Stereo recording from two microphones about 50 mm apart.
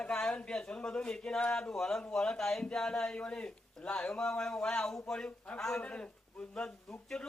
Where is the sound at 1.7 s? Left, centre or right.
Centre.